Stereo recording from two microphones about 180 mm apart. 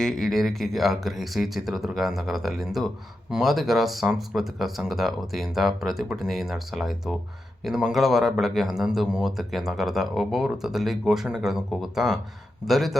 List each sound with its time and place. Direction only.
0.0 s speech: centre (ahead or behind)